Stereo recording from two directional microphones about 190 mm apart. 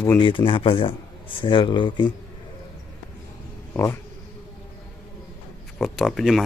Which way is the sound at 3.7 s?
15° left (ahead or behind).